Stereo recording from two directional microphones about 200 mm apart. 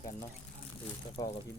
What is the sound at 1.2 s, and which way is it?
Speech, 15° left (ahead or behind).